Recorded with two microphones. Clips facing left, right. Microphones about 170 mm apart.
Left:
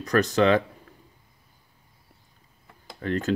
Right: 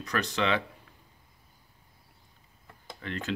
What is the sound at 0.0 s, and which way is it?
Speech, 45° left (ahead or behind).